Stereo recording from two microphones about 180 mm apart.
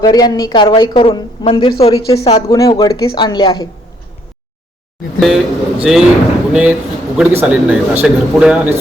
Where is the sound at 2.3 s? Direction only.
20° left (ahead or behind).